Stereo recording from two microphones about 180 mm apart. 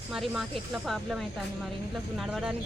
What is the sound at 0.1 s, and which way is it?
Speech, centre (ahead or behind).